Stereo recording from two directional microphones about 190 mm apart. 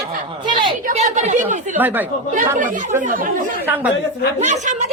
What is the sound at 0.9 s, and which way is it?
Speech, 40° right (ahead or behind).